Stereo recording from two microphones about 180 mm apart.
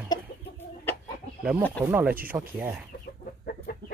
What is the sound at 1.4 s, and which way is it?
Speech, 10° right (ahead or behind).